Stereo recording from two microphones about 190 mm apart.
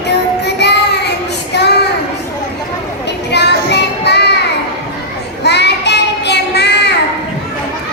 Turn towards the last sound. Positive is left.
turn(degrees=60)  # may be behind; listen again after turning